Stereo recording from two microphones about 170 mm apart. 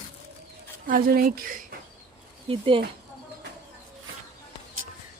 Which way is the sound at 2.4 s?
35° right (ahead or behind).